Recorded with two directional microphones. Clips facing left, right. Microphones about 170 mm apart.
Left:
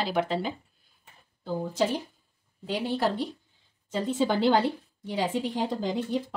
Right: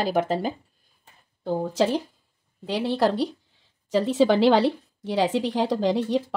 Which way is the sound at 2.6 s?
90° right.